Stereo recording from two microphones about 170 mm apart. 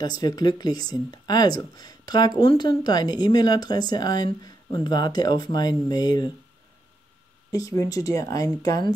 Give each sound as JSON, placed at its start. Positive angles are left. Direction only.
{"t": 0.0, "sound": "speech", "side_deg": 25}
{"t": 7.5, "sound": "speech", "side_deg": 20}